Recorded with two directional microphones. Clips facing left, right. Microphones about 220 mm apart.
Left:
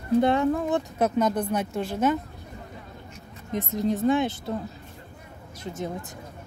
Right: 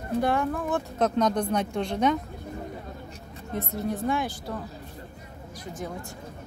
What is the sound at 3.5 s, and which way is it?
A woman's voice, 15° left (ahead or behind).